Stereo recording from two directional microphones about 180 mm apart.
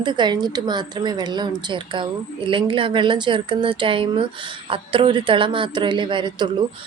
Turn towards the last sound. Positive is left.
turn(degrees=-25)  # may be behind; listen again after turning